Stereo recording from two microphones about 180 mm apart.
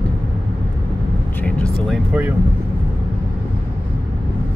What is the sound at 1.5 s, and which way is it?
Speech, 5° left (ahead or behind).